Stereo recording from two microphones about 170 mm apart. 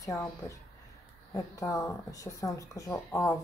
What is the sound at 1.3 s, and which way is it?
Speech, 20° left (ahead or behind).